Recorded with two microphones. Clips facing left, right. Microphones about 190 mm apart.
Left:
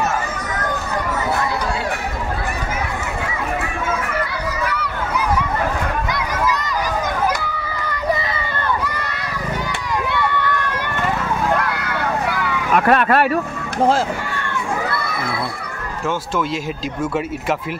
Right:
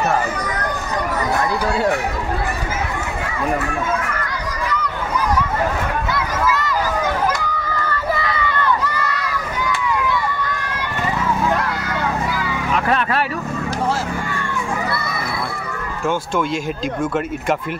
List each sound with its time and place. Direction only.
6.1 s a sound: 15° left (ahead or behind)
7.8 s run: 15° left (ahead or behind)
10.0 s run: 65° left (ahead or behind)
11.8 s vehicle: 60° left (ahead or behind)